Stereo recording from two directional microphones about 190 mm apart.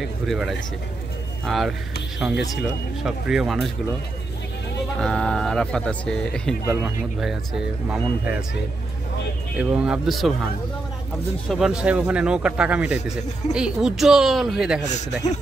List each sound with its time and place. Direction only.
0.0 s speech: centre (ahead or behind)
5.0 s speech: 5° left (ahead or behind)
9.6 s speech: centre (ahead or behind)
11.4 s speech: 5° right (ahead or behind)
14.9 s a man's voice: 40° left (ahead or behind)